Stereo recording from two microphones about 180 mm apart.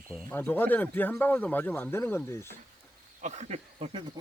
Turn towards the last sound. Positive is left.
turn(degrees=-30)  # may be behind; listen again after turning